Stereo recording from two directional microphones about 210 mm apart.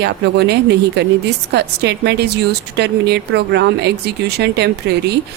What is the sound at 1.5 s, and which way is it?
Speech, 50° right (ahead or behind).